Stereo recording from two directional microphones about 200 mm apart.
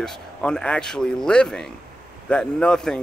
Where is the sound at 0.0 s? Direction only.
5° left (ahead or behind).